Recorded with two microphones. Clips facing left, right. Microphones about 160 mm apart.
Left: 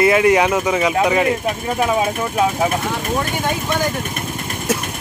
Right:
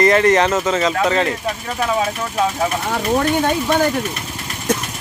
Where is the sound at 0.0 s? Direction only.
10° left (ahead or behind).